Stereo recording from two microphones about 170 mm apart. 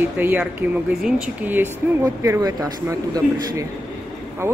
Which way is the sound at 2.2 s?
20° right (ahead or behind).